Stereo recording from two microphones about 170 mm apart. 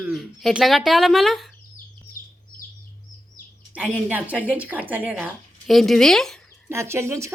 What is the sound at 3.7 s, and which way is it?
Speech, 5° right (ahead or behind).